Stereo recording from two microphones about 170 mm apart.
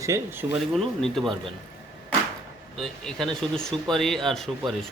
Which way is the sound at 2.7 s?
Centre (ahead or behind).